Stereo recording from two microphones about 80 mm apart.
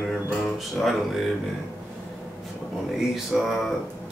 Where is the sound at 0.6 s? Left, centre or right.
Centre.